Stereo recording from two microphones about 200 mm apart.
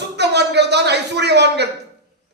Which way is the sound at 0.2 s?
55° right (ahead or behind).